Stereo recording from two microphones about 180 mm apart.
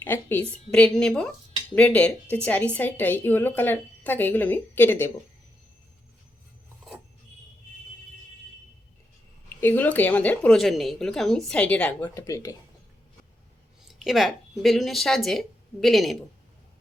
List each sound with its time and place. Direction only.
0.0 s a woman's voice: 10° left (ahead or behind)
9.6 s a woman's voice: 10° left (ahead or behind)
12.0 s speech: 20° left (ahead or behind)
13.8 s a woman's voice: centre (ahead or behind)